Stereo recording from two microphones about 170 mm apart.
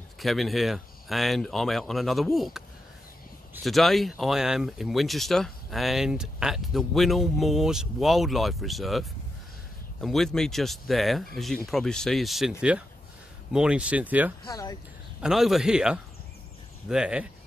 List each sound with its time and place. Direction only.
0.2 s speech: centre (ahead or behind)
3.6 s speech: centre (ahead or behind)
10.0 s speech: centre (ahead or behind)
14.5 s speech: 20° left (ahead or behind)
15.2 s speech: centre (ahead or behind)